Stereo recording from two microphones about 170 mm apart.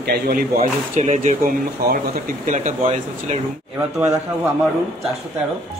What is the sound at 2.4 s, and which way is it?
Speech, 45° right (ahead or behind).